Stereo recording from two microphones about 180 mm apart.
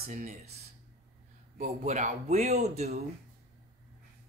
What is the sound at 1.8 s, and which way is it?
Speech, 40° right (ahead or behind).